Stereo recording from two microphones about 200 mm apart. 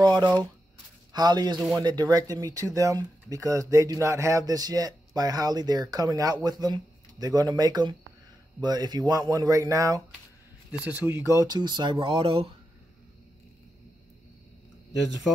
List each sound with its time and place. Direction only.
0.0 s shuffling cards: 20° right (ahead or behind)
1.1 s speech: 20° right (ahead or behind)